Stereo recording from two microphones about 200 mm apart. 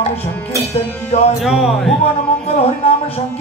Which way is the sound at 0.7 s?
35° left (ahead or behind).